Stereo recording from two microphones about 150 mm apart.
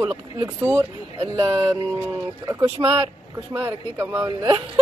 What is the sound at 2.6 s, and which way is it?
Speech, 35° right (ahead or behind).